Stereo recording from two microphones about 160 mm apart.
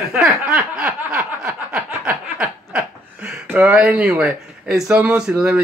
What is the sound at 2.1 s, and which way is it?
Speech, 15° right (ahead or behind).